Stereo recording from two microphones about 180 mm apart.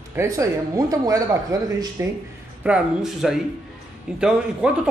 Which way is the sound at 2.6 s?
5° right (ahead or behind).